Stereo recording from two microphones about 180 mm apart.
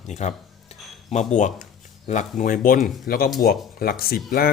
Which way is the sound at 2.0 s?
40° left (ahead or behind).